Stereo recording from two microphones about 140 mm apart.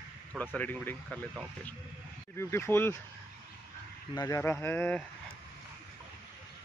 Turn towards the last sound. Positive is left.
turn(degrees=10)  # may be behind; listen again after turning